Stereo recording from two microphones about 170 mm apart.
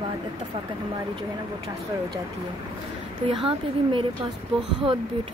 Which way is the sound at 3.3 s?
30° right (ahead or behind).